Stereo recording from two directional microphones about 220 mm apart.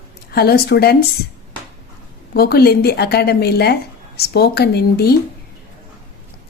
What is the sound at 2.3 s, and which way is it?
Speech, 45° left (ahead or behind).